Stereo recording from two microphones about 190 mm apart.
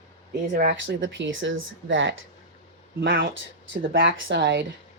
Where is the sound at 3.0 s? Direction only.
70° right (ahead or behind).